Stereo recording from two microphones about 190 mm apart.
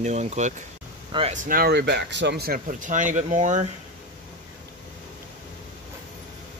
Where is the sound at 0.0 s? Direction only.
35° right (ahead or behind).